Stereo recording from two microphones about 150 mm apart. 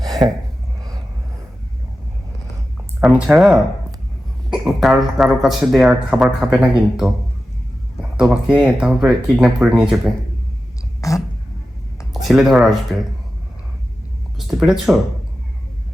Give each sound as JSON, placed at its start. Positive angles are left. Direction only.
{"t": 0.1, "sound": "a sound", "side_deg": -25}
{"t": 3.0, "sound": "speech", "side_deg": -5}
{"t": 8.3, "sound": "speech", "side_deg": -5}
{"t": 11.0, "sound": "a sound", "side_deg": 20}
{"t": 12.1, "sound": "speech", "side_deg": 0}
{"t": 14.3, "sound": "speech", "side_deg": 0}